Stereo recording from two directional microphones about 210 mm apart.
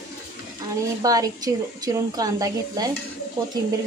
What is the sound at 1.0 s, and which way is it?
A woman's voice, 15° right (ahead or behind).